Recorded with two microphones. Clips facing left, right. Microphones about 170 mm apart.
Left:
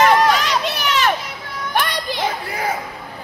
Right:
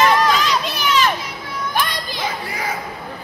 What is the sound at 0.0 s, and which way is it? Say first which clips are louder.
Run: left 2 dB; 60° left (ahead or behind).